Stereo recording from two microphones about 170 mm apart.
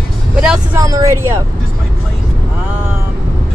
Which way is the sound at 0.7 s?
20° right (ahead or behind).